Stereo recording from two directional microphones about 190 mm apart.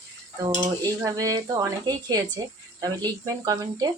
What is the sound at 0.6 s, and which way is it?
Speech, 15° right (ahead or behind).